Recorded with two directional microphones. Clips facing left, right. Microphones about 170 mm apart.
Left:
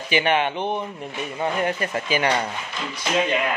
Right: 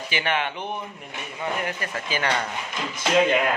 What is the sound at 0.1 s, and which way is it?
Speech, 20° left (ahead or behind).